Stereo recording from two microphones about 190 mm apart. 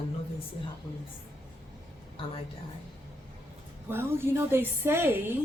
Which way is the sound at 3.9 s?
10° right (ahead or behind).